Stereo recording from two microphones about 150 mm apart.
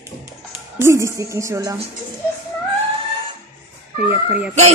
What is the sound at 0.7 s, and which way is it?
Speech, 20° right (ahead or behind).